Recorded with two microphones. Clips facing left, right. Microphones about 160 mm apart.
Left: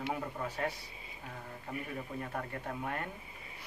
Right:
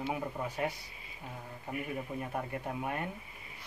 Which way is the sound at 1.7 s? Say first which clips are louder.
Right 3 dB; 15° right (ahead or behind).